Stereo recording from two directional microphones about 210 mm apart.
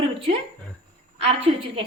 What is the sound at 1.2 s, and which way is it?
Speech, 25° right (ahead or behind).